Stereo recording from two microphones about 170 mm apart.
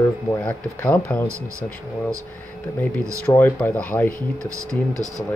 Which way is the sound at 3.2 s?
10° left (ahead or behind).